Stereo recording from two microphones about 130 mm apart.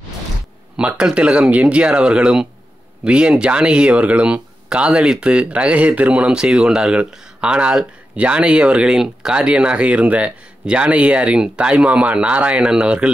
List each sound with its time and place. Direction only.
0.7 s speech: 5° right (ahead or behind)